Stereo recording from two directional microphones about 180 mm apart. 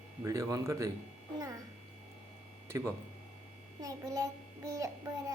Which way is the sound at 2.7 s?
15° right (ahead or behind).